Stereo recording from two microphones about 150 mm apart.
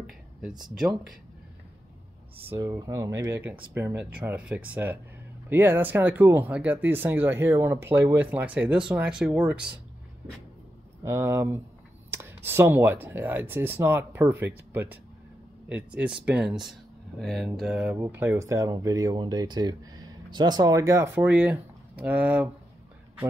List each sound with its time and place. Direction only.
2.4 s speech: 15° right (ahead or behind)
11.1 s speech: 15° right (ahead or behind)